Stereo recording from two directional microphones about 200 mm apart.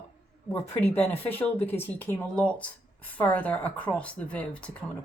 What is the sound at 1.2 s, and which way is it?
A woman's voice, 10° left (ahead or behind).